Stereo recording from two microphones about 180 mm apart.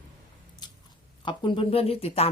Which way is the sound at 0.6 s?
25° left (ahead or behind).